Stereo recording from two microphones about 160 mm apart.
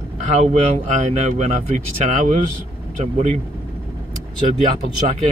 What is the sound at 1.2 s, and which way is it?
Speech, 45° right (ahead or behind).